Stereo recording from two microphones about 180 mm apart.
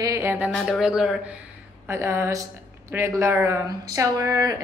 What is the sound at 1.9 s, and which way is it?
A woman's voice, 15° right (ahead or behind).